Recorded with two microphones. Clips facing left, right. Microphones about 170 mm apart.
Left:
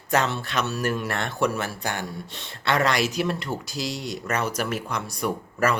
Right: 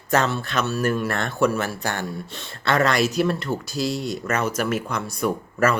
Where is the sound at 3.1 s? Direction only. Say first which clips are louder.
Right 4 dB; 15° left (ahead or behind).